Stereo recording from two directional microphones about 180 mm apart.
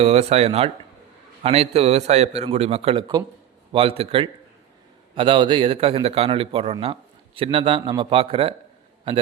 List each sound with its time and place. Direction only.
0.0 s a man's voice: 35° right (ahead or behind)